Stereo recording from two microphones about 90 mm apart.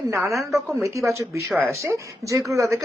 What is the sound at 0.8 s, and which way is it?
Speech, 35° right (ahead or behind).